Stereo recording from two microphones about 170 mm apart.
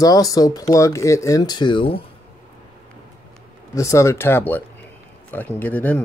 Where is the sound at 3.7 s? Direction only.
20° left (ahead or behind).